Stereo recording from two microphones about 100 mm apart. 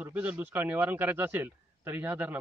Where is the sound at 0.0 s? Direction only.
15° right (ahead or behind).